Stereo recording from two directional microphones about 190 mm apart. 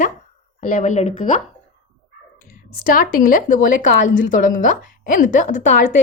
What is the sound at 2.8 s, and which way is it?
Speech, 50° left (ahead or behind).